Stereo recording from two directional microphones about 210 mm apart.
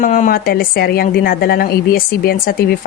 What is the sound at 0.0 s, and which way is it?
A woman's voice, 40° left (ahead or behind).